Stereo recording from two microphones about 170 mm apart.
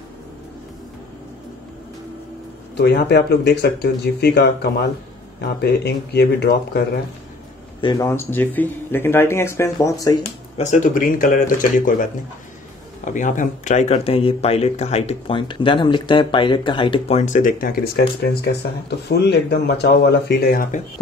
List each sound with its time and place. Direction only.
2.7 s speech: 80° left
7.8 s speech: 20° left (ahead or behind)
10.2 s speech: 45° left (ahead or behind)
17.2 s speech: 50° left (ahead or behind)
18.4 s speech: 80° left